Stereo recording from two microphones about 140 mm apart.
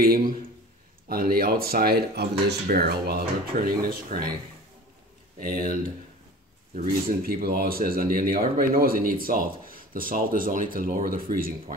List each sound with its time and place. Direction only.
0.0 s speech: 90° right
5.4 s speech: 90° right